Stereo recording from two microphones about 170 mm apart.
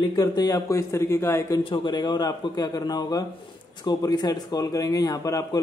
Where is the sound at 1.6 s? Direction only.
25° left (ahead or behind).